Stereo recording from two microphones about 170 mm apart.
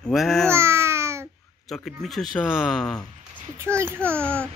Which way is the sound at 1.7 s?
Centre (ahead or behind).